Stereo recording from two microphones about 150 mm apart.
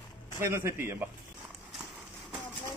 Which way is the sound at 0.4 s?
15° right (ahead or behind).